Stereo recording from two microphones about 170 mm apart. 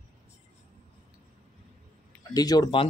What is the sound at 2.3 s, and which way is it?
Speech, 25° left (ahead or behind).